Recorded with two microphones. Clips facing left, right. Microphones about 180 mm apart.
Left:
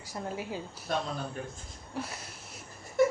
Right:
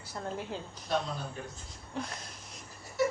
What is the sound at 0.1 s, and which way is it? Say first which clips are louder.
Speech: left 1 dB; 10° left (ahead or behind).